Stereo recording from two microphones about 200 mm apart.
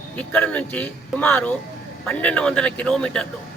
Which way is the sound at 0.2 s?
5° left (ahead or behind).